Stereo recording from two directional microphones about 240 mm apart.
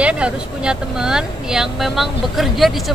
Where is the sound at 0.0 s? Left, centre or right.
Centre.